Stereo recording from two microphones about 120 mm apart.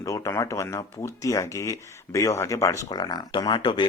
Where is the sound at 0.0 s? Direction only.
30° left (ahead or behind).